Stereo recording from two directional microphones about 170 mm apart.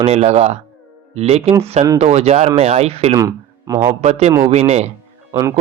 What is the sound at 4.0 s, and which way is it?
Speech, 40° right (ahead or behind).